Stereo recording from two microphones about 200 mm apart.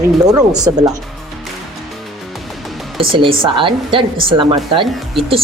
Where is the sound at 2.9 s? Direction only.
25° right (ahead or behind).